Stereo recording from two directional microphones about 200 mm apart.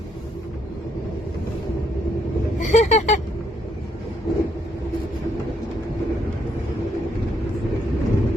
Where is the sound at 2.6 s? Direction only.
35° left (ahead or behind).